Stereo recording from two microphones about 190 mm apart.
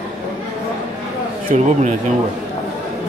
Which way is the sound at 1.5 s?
40° right (ahead or behind).